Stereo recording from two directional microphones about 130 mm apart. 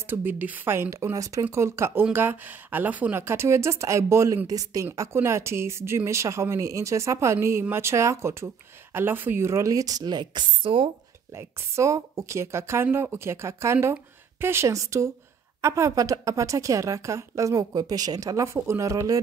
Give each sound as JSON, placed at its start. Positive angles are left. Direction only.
{"t": 0.0, "sound": "a woman's voice", "side_deg": -15}
{"t": 11.3, "sound": "a woman's voice", "side_deg": -20}